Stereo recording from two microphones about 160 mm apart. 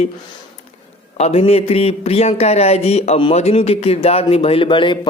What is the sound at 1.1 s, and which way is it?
Speech, 40° left (ahead or behind).